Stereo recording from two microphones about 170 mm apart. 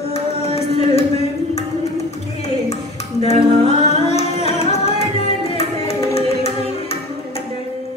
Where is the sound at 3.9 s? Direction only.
40° left (ahead or behind).